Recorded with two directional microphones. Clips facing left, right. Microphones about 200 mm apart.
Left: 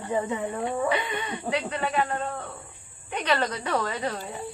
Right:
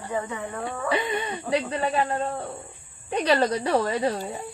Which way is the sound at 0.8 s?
40° right (ahead or behind).